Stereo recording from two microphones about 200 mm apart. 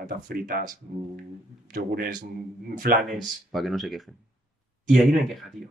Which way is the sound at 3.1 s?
Centre (ahead or behind).